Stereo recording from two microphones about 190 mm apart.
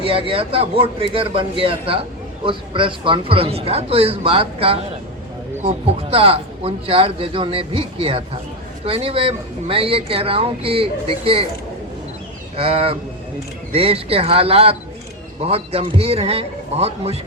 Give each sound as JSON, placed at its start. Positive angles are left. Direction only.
{"t": 0.0, "sound": "a man's voice", "side_deg": -30}
{"t": 12.5, "sound": "a man's voice", "side_deg": -30}